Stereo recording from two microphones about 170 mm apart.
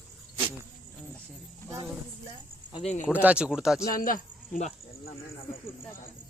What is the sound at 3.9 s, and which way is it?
Speech, 55° left (ahead or behind).